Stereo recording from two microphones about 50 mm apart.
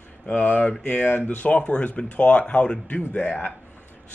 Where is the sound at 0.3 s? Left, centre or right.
Left.